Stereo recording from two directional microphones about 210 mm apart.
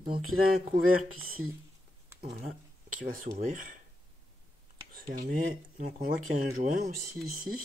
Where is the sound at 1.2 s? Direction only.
80° right.